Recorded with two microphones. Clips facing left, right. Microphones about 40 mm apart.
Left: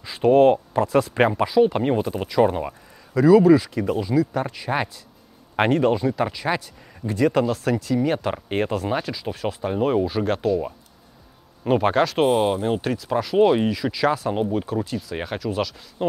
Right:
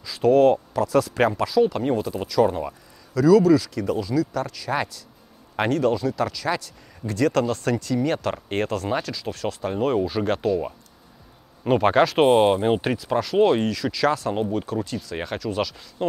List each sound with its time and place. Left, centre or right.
0.0 s speech: left; by 12.3 s centre
12.3 s speech: right; by 16.1 s centre